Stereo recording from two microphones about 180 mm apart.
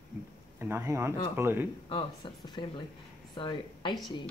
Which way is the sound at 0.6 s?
10° right (ahead or behind).